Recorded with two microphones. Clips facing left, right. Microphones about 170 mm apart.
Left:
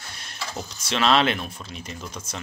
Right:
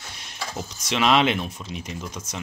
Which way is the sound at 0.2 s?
15° right (ahead or behind).